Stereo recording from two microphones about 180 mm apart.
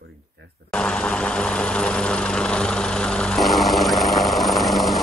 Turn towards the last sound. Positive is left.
turn(degrees=0)  # may be behind; listen again after turning